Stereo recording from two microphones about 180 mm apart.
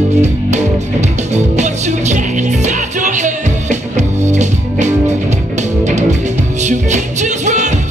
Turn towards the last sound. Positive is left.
turn(degrees=-40)  # may be behind; listen again after turning